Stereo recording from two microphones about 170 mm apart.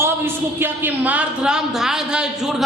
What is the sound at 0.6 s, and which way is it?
A woman's voice, 10° right (ahead or behind).